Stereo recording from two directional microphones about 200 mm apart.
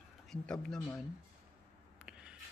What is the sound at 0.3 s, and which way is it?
Speech, 5° left (ahead or behind).